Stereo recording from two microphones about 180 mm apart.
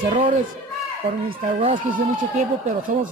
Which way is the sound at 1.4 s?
45° right (ahead or behind).